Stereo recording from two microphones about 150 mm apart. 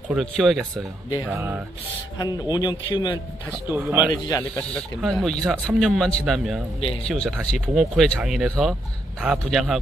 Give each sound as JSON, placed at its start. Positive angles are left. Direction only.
{"t": 0.1, "sound": "speech", "side_deg": 0}
{"t": 1.2, "sound": "speech", "side_deg": -15}
{"t": 2.1, "sound": "speech", "side_deg": 25}
{"t": 3.7, "sound": "speech", "side_deg": -10}
{"t": 4.1, "sound": "speech", "side_deg": 25}
{"t": 4.4, "sound": "speech", "side_deg": 10}
{"t": 6.8, "sound": "speech", "side_deg": 40}
{"t": 7.1, "sound": "speech", "side_deg": 5}